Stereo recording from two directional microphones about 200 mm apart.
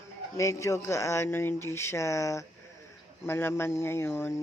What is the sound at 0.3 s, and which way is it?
Speech, 15° left (ahead or behind).